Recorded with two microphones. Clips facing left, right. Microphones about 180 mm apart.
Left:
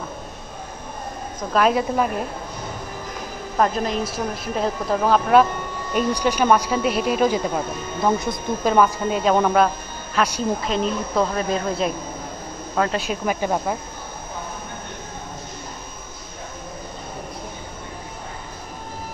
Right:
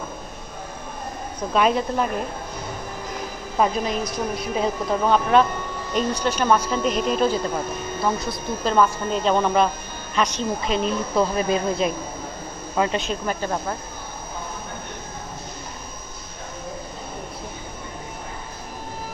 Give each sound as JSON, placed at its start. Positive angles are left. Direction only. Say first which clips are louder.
{"t": 1.5, "sound": "a woman's voice", "louder": "left 1 dB", "side_deg": 0}
{"t": 3.5, "sound": "a woman's voice", "louder": "left 1 dB", "side_deg": -5}
{"t": 8.7, "sound": "a woman's voice", "louder": "left 1 dB", "side_deg": 10}
{"t": 12.9, "sound": "speech", "louder": "left 2 dB", "side_deg": 10}